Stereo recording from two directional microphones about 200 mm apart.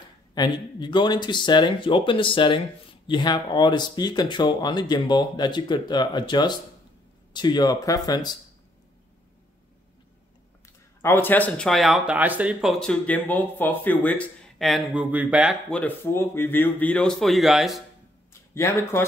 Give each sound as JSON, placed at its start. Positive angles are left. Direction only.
{"t": 0.3, "sound": "speech", "side_deg": 20}
{"t": 11.0, "sound": "speech", "side_deg": 10}
{"t": 15.7, "sound": "speech", "side_deg": 10}
{"t": 18.5, "sound": "speech", "side_deg": 15}